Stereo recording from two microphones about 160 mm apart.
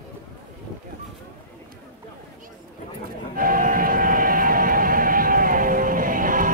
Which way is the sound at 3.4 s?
60° right (ahead or behind).